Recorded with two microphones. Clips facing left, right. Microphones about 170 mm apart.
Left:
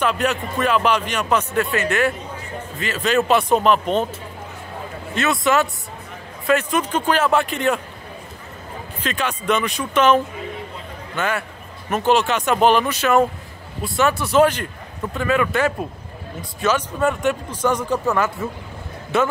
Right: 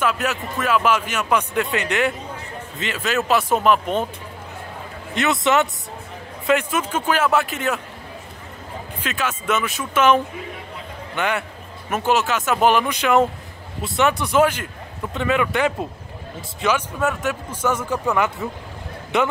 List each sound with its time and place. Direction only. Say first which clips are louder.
0.0 s speech: left 2 dB; 5° right (ahead or behind)
3.0 s speech: left 3 dB; 5° right (ahead or behind)
5.1 s speech: even; 20° right (ahead or behind)
6.7 s speech: left 2 dB; 5° right (ahead or behind)
9.0 s speech: left 2 dB; 5° right (ahead or behind)